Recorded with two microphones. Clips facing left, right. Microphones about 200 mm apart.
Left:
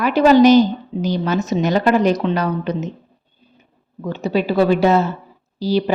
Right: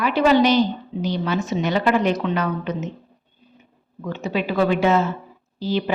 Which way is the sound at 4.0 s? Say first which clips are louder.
Left 5 dB; 35° left (ahead or behind).